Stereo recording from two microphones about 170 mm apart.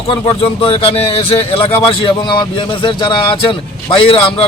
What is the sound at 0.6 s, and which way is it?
A man's voice, 30° left (ahead or behind).